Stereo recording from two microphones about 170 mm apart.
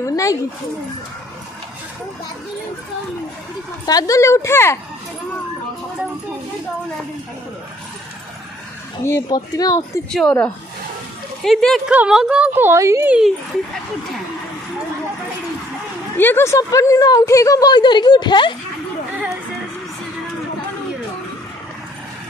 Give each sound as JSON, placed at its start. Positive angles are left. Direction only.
{"t": 0.0, "sound": "dog", "side_deg": 20}
{"t": 3.8, "sound": "speech", "side_deg": 20}
{"t": 9.0, "sound": "a woman's voice", "side_deg": 20}
{"t": 10.1, "sound": "speech", "side_deg": 5}
{"t": 16.2, "sound": "a woman's voice", "side_deg": 15}